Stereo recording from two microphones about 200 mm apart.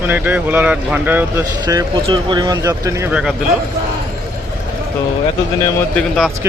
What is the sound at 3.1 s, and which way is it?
Speech, 5° right (ahead or behind).